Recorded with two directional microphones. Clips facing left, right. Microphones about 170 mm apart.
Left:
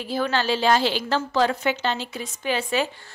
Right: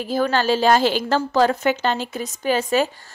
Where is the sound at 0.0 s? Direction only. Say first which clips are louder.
Right 4 dB; 45° right (ahead or behind).